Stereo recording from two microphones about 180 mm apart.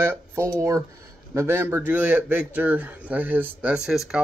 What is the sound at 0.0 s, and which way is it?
Speech, 10° right (ahead or behind).